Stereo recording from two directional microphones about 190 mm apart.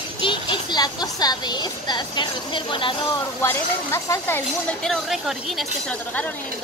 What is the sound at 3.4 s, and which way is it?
Speech, 10° left (ahead or behind).